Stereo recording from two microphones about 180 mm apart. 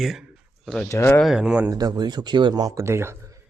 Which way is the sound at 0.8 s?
15° left (ahead or behind).